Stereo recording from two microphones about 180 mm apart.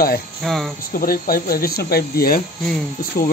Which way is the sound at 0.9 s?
55° left (ahead or behind).